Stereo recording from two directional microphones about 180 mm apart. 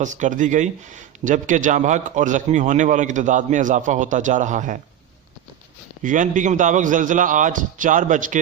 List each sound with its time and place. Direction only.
0.0 s a man's voice: 45° right (ahead or behind)
6.0 s a man's voice: 45° right (ahead or behind)